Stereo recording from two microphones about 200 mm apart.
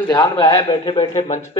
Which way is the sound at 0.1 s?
20° left (ahead or behind).